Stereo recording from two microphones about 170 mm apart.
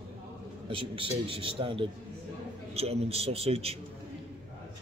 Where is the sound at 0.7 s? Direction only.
30° right (ahead or behind).